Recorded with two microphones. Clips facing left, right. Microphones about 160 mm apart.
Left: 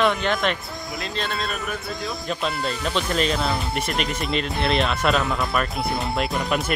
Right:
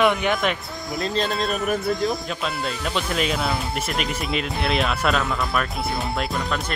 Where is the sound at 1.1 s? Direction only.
40° right (ahead or behind).